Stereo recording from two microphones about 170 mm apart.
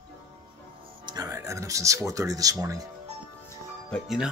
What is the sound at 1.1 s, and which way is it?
Speech, 20° right (ahead or behind).